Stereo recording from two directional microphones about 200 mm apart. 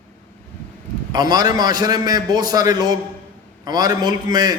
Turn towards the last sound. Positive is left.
turn(degrees=-20)  # may be behind; listen again after turning